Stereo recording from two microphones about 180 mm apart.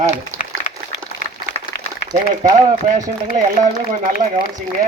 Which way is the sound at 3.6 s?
45° right (ahead or behind).